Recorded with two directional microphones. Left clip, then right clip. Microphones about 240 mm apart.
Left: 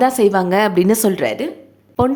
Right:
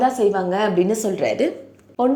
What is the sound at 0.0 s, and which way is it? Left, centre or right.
A woman's voice, left.